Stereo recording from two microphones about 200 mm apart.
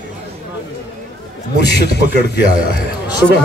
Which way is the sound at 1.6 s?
55° left (ahead or behind).